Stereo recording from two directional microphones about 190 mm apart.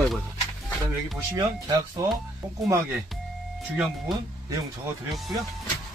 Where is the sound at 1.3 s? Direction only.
20° right (ahead or behind).